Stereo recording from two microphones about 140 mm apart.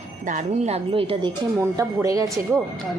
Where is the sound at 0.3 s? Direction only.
60° right (ahead or behind); by 1.3 s 40° right (ahead or behind).